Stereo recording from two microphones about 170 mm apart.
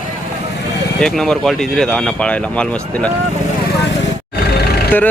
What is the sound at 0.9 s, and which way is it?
Speech, 5° left (ahead or behind).